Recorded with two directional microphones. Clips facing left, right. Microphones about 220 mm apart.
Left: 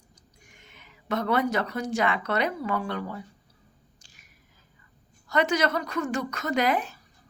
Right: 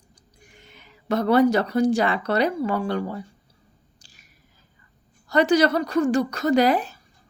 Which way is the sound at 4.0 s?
35° right (ahead or behind).